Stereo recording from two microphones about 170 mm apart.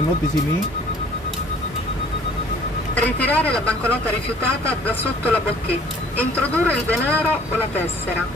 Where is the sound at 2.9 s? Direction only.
10° left (ahead or behind).